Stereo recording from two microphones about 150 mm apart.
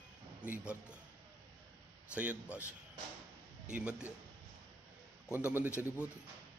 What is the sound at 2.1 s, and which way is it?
Speech, 10° right (ahead or behind).